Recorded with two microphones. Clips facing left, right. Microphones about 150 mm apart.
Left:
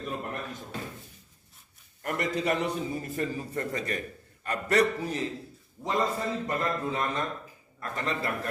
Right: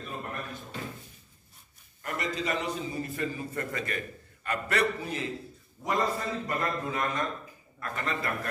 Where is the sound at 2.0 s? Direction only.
60° left (ahead or behind).